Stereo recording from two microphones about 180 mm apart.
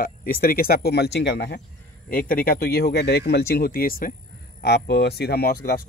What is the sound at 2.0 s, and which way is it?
Speech, 50° left (ahead or behind).